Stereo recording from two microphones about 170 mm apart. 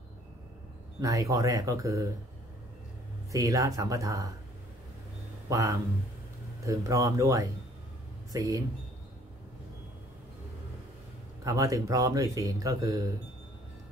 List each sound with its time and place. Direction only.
1.0 s speech: 20° right (ahead or behind)
3.3 s speech: 20° right (ahead or behind)
5.5 s speech: 20° right (ahead or behind)
11.4 s speech: 20° right (ahead or behind)